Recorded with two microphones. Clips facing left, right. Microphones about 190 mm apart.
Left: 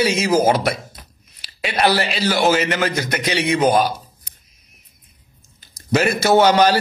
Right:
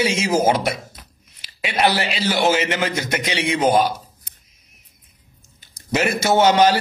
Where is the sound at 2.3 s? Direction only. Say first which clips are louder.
Left 1 dB; 25° right (ahead or behind).